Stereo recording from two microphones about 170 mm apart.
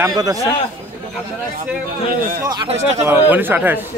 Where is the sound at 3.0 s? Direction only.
15° right (ahead or behind).